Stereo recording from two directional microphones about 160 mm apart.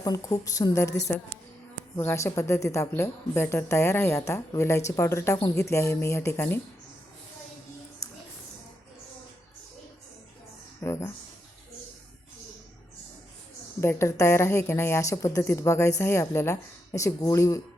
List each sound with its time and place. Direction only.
0.0 s a woman's voice: 20° left (ahead or behind)
2.0 s speech: 15° left (ahead or behind)
8.0 s a sound: 20° left (ahead or behind)
10.8 s speech: 15° left (ahead or behind)
13.8 s speech: 15° left (ahead or behind)